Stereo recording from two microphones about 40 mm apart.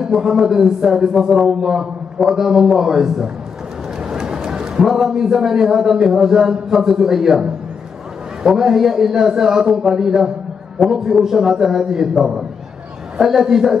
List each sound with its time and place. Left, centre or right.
0.0 s speech: centre
4.0 s a sound: centre
4.8 s speech: centre
8.5 s speech: centre
13.2 s speech: centre